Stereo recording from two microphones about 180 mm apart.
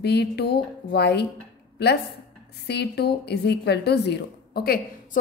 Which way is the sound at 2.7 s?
65° left (ahead or behind).